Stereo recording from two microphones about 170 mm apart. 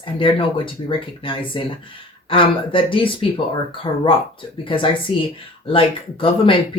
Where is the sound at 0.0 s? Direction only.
30° left (ahead or behind).